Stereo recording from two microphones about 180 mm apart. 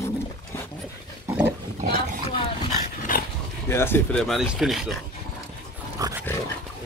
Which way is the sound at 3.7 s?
15° left (ahead or behind).